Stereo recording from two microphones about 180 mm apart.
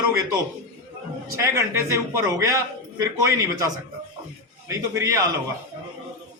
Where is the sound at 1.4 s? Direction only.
15° right (ahead or behind).